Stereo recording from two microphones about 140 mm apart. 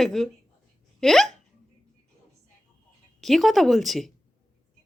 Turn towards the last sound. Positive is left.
turn(degrees=0)  # may be behind; listen again after turning